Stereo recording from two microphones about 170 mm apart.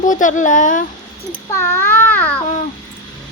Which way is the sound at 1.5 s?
15° left (ahead or behind).